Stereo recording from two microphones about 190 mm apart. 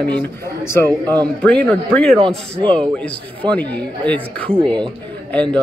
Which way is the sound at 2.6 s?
25° right (ahead or behind).